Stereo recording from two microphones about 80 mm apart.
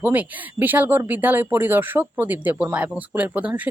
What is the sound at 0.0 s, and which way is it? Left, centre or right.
Speech, right.